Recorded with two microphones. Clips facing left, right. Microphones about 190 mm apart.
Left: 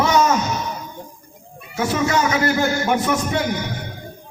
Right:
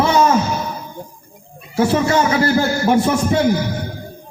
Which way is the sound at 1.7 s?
30° right (ahead or behind).